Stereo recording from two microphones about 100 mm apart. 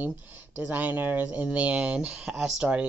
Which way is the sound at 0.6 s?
15° right (ahead or behind).